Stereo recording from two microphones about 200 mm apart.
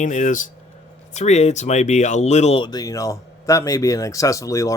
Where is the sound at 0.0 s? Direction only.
35° left (ahead or behind).